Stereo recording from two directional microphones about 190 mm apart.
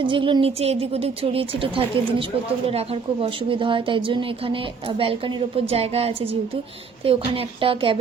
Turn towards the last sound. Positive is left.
turn(degrees=-30)  # may be behind; listen again after turning